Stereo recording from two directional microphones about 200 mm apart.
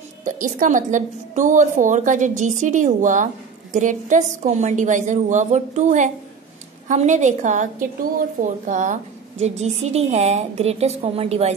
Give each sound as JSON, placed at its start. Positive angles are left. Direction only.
{"t": 0.2, "sound": "a woman's voice", "side_deg": -40}